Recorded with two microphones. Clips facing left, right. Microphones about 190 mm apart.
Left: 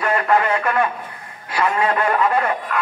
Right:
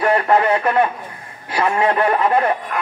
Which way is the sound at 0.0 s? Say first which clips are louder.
Right 3 dB; 25° right (ahead or behind).